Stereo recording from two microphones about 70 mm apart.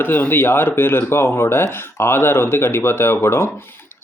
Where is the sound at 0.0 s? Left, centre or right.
Left.